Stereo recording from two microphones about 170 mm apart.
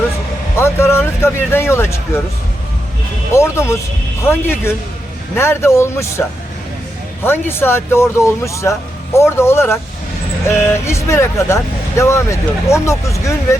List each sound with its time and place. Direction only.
0.5 s speech: 15° left (ahead or behind)
3.3 s speech: 15° left (ahead or behind)